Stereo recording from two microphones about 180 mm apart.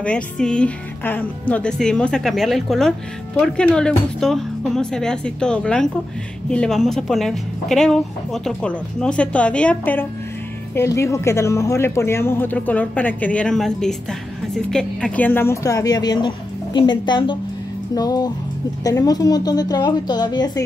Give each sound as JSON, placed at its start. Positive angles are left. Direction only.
{"t": 0.0, "sound": "speech", "side_deg": 5}